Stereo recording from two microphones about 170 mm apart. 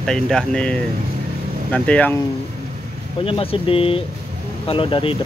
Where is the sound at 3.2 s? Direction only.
30° left (ahead or behind).